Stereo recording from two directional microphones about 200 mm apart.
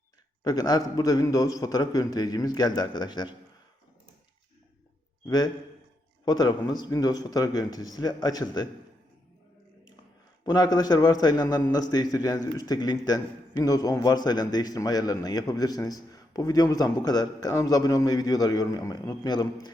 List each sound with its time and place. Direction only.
0.4 s a man's voice: 20° left (ahead or behind)
6.2 s a man's voice: 20° left (ahead or behind)
10.4 s a man's voice: 20° left (ahead or behind)